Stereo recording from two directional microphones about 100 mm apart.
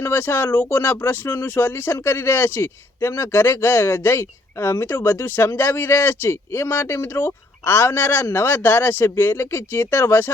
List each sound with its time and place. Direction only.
0.0 s speech: 20° left (ahead or behind)